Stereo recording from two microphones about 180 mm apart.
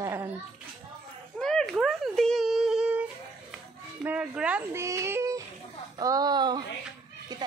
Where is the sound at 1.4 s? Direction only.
5° left (ahead or behind); by 6.6 s 25° right (ahead or behind).